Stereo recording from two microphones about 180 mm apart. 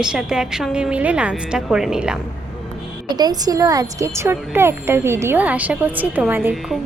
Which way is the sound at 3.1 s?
20° right (ahead or behind).